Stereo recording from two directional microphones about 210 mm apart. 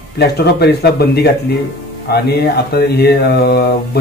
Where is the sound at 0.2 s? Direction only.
50° left (ahead or behind).